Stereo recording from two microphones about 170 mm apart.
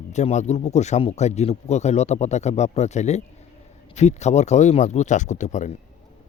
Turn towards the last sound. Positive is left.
turn(degrees=45)  # may be behind; listen again after turning